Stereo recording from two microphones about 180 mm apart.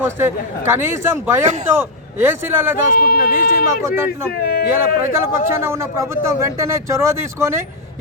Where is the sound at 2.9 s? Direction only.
55° left (ahead or behind).